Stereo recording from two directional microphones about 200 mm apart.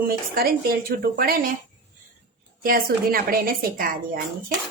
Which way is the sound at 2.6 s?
45° right (ahead or behind).